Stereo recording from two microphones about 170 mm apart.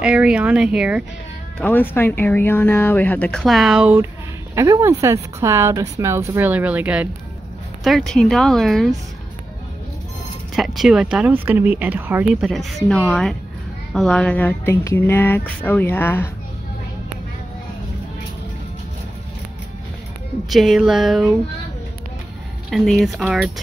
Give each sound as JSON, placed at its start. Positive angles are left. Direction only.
{"t": 0.0, "sound": "a woman's voice", "side_deg": -5}
{"t": 1.6, "sound": "a woman's voice", "side_deg": 10}
{"t": 10.5, "sound": "speech", "side_deg": 0}
{"t": 20.4, "sound": "speech", "side_deg": 0}
{"t": 22.7, "sound": "speech", "side_deg": 0}